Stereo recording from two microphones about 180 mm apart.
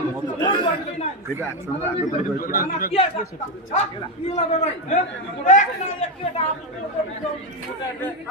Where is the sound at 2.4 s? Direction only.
55° left (ahead or behind).